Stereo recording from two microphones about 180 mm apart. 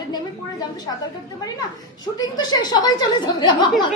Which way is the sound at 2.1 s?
20° left (ahead or behind).